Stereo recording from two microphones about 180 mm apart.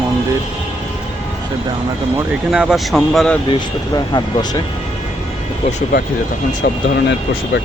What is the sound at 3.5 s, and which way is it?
Speech, 25° left (ahead or behind).